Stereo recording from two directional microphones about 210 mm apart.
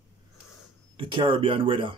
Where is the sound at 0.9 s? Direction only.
25° right (ahead or behind).